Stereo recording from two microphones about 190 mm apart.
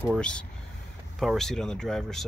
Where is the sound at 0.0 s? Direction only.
5° left (ahead or behind).